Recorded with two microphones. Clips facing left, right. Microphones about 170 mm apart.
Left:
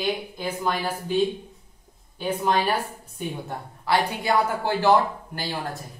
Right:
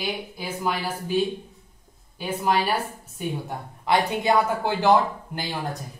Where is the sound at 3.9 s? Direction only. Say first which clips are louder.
Right 2 dB; 20° right (ahead or behind).